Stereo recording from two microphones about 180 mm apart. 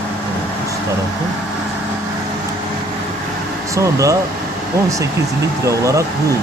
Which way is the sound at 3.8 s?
15° right (ahead or behind).